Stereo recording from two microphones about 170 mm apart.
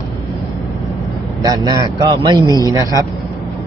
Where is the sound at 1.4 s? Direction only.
20° right (ahead or behind).